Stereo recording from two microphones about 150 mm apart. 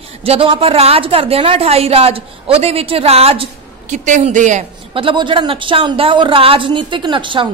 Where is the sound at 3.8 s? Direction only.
60° right (ahead or behind).